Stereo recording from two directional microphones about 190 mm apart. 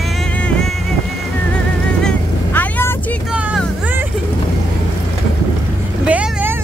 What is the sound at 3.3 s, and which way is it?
Vehicle, 5° right (ahead or behind).